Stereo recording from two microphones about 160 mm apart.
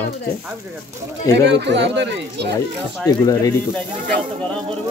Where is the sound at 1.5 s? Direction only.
90° right.